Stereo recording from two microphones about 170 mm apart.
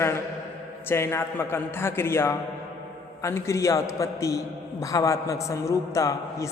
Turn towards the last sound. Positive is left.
turn(degrees=20)  # may be behind; listen again after turning